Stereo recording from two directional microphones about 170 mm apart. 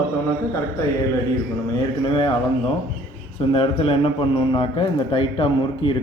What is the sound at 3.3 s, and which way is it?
A man's voice, 35° left (ahead or behind).